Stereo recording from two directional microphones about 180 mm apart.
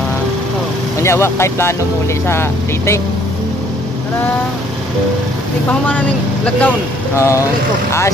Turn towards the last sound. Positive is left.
turn(degrees=15)  # may be behind; listen again after turning